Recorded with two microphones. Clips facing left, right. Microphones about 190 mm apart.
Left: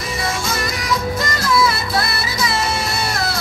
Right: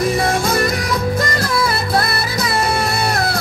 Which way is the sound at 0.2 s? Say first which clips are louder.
Right 6 dB; 55° right (ahead or behind).